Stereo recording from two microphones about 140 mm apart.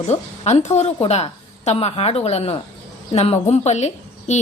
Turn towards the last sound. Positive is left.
turn(degrees=55)  # may be behind; listen again after turning